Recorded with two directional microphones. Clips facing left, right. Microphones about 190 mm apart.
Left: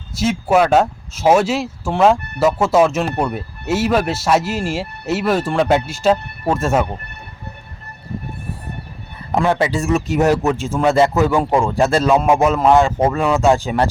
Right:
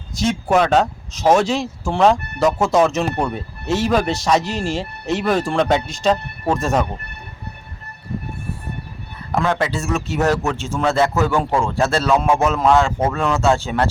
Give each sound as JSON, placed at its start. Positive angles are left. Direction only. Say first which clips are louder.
{"t": 0.2, "sound": "speech", "louder": "left 2 dB", "side_deg": 5}
{"t": 9.3, "sound": "a man's voice", "louder": "left 3 dB", "side_deg": 15}